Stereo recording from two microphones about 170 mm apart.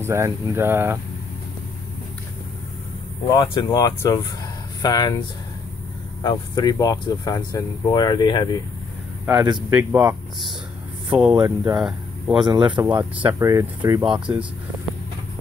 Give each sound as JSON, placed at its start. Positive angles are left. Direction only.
{"t": 0.0, "sound": "speech", "side_deg": -15}
{"t": 3.3, "sound": "speech", "side_deg": 20}
{"t": 6.2, "sound": "speech", "side_deg": 25}
{"t": 9.3, "sound": "speech", "side_deg": -25}
{"t": 9.7, "sound": "speech", "side_deg": -15}
{"t": 11.3, "sound": "speech", "side_deg": -25}
{"t": 11.7, "sound": "speech", "side_deg": 0}
{"t": 12.4, "sound": "speech", "side_deg": -25}
{"t": 12.8, "sound": "speech", "side_deg": -10}
{"t": 14.1, "sound": "speech", "side_deg": -5}